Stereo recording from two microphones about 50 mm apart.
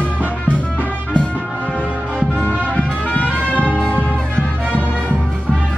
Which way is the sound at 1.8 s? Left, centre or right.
Right.